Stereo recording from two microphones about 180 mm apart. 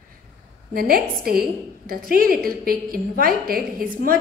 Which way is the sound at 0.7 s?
55° right (ahead or behind).